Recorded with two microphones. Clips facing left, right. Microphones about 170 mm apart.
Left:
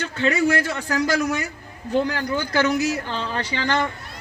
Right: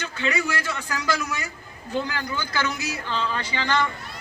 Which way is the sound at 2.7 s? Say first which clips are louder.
Left 7 dB; 60° left (ahead or behind).